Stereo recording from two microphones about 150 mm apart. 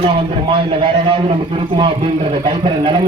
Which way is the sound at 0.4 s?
35° right (ahead or behind).